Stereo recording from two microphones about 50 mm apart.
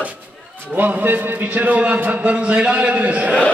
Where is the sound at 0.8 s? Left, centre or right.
Right.